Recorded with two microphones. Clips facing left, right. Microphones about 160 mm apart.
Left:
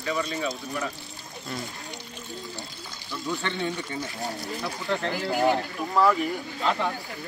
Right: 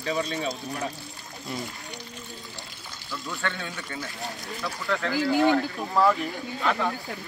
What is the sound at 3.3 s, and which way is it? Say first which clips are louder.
Speech: left 4 dB; 20° left (ahead or behind).